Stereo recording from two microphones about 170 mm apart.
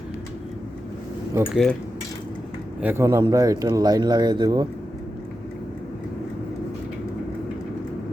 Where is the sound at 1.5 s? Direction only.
Centre (ahead or behind).